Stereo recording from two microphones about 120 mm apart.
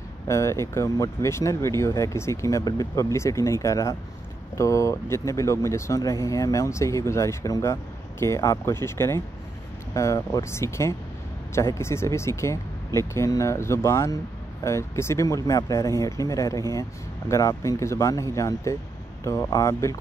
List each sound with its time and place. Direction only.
0.3 s speech: 25° left (ahead or behind)